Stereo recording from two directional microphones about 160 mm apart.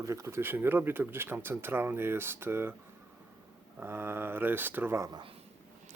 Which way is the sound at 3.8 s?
15° right (ahead or behind).